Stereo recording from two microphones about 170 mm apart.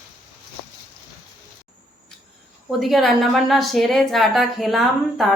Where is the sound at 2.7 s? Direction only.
Centre (ahead or behind).